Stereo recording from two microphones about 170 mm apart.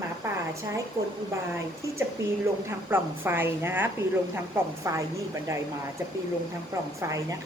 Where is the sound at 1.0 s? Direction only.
35° right (ahead or behind).